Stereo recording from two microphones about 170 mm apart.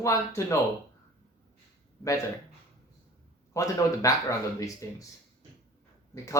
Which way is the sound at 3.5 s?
20° left (ahead or behind).